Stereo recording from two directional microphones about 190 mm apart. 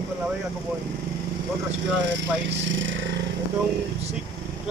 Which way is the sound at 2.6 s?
80° right.